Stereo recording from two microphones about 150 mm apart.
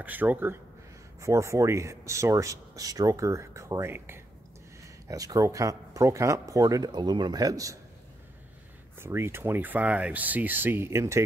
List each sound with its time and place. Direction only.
0.0 s speech: 10° right (ahead or behind)
9.0 s speech: 15° right (ahead or behind)